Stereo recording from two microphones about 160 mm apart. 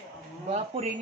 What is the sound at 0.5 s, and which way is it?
Speech, 40° right (ahead or behind).